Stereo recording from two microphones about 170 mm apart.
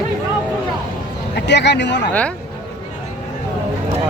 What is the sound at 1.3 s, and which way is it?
Speech, 90° left.